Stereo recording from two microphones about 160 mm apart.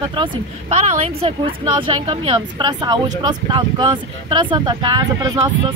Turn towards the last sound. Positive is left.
turn(degrees=-25)  # may be behind; listen again after turning